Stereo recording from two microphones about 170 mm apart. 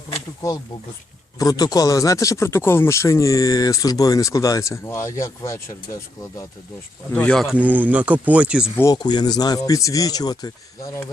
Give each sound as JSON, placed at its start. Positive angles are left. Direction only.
{"t": 1.4, "sound": "speech", "side_deg": 20}
{"t": 7.1, "sound": "speech", "side_deg": 5}
{"t": 8.7, "sound": "speech", "side_deg": 20}